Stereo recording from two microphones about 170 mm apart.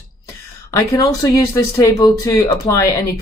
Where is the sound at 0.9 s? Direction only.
20° left (ahead or behind).